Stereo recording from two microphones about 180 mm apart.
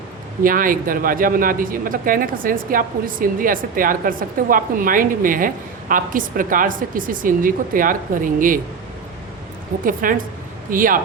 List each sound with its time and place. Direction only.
0.4 s speech: 50° right (ahead or behind)
9.8 s speech: 50° right (ahead or behind)